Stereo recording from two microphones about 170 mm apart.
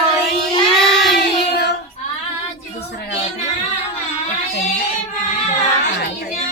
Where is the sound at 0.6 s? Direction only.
Centre (ahead or behind).